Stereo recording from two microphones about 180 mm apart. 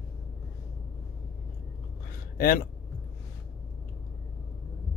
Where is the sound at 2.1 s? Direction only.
55° left (ahead or behind).